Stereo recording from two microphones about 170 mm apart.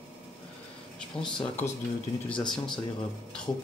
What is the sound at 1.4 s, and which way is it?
Speech, 10° left (ahead or behind).